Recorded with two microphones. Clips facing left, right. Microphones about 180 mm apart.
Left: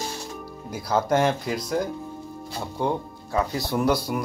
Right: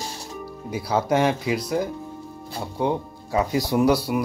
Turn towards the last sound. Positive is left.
turn(degrees=-5)  # may be behind; listen again after turning